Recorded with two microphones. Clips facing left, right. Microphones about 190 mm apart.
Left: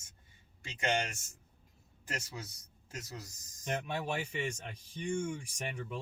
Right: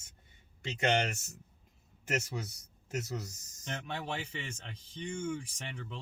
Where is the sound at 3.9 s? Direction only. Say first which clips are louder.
Left 2 dB; 15° left (ahead or behind).